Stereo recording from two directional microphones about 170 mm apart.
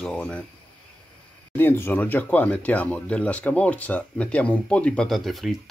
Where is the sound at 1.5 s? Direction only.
15° left (ahead or behind).